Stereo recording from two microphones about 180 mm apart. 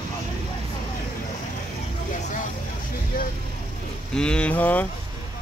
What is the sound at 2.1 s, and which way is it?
Vehicle, 45° left (ahead or behind).